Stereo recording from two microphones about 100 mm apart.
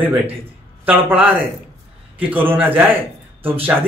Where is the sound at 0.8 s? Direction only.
15° right (ahead or behind).